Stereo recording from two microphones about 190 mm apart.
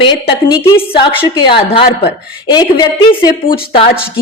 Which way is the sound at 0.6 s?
10° left (ahead or behind).